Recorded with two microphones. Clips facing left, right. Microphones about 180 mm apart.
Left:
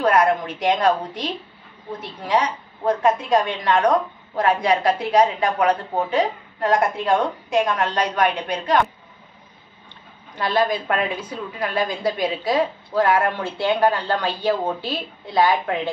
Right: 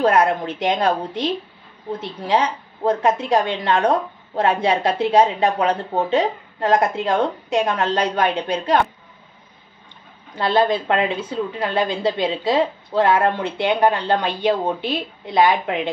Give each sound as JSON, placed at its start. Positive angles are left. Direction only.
{"t": 0.0, "sound": "a woman's voice", "side_deg": -25}
{"t": 10.4, "sound": "a woman's voice", "side_deg": -25}